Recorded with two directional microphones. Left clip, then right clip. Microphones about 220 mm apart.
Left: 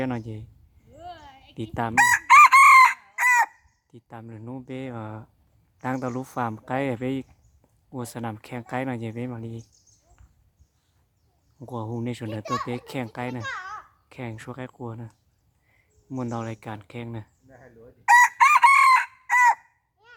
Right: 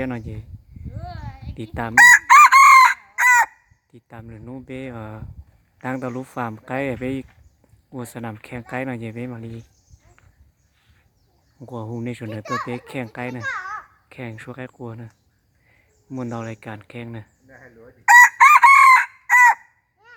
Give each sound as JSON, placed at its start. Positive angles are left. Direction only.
{"t": 0.0, "sound": "speech", "side_deg": 10}
{"t": 0.9, "sound": "chicken", "side_deg": 15}
{"t": 2.0, "sound": "chicken", "side_deg": -10}
{"t": 3.9, "sound": "speech", "side_deg": 5}
{"t": 11.6, "sound": "speech", "side_deg": 5}
{"t": 13.4, "sound": "babbling", "side_deg": 40}
{"t": 14.1, "sound": "speech", "side_deg": 5}
{"t": 17.5, "sound": "chicken", "side_deg": 45}
{"t": 18.0, "sound": "chicken", "side_deg": -5}